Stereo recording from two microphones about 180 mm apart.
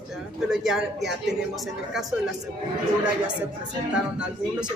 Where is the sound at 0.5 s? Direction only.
Centre (ahead or behind).